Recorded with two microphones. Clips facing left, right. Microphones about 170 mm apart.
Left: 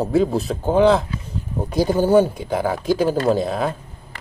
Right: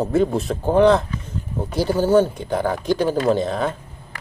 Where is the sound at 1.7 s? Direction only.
15° left (ahead or behind).